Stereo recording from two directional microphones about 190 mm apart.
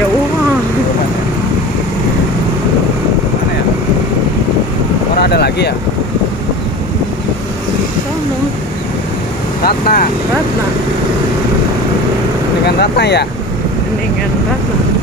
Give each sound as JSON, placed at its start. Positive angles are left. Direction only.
{"t": 5.2, "sound": "a sound", "side_deg": 60}
{"t": 9.6, "sound": "speech", "side_deg": 50}
{"t": 12.6, "sound": "speech", "side_deg": 60}